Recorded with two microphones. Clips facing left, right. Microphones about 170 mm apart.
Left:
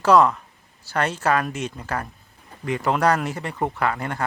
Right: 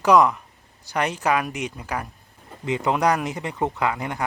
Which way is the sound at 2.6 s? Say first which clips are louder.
Even; 20° right (ahead or behind).